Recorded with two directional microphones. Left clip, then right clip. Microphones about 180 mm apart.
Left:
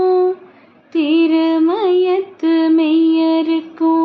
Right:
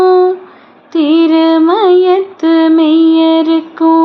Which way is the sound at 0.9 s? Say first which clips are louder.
Right 5 dB; 20° right (ahead or behind).